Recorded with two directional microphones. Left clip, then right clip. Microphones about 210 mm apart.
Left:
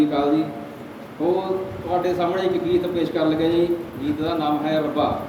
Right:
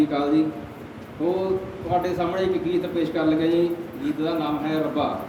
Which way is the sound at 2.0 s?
15° right (ahead or behind).